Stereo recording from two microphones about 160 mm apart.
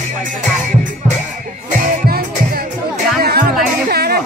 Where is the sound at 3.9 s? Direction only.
80° right.